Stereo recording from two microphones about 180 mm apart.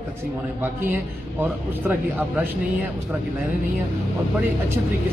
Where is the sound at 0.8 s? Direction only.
10° right (ahead or behind).